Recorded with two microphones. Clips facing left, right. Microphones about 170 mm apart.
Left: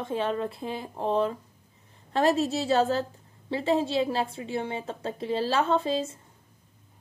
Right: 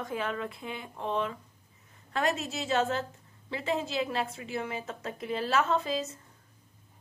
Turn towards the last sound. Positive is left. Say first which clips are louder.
# left 4 dB
turn(degrees=30)  # may be behind; listen again after turning